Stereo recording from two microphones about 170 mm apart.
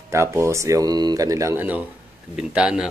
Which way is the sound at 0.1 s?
15° right (ahead or behind).